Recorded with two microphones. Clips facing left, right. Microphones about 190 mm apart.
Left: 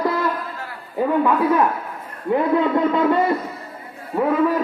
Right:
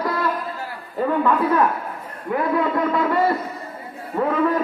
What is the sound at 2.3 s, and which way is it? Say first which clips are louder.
Speech: left 3 dB; 25° left (ahead or behind).